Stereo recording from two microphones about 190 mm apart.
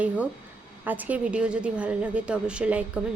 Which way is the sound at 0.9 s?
10° right (ahead or behind).